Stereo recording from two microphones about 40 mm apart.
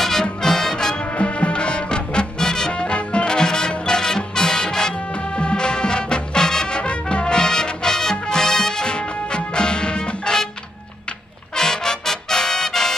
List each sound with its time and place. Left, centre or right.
0.0 s music: centre
1.1 s music: left
2.7 s music: left
11.5 s music: centre